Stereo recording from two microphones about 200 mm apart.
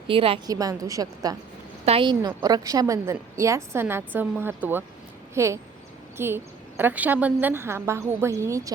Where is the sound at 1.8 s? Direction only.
30° right (ahead or behind).